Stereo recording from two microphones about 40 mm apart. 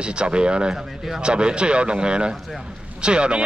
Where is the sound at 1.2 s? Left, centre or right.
Right.